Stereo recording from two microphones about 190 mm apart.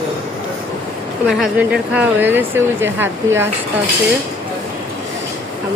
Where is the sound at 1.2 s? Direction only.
Centre (ahead or behind).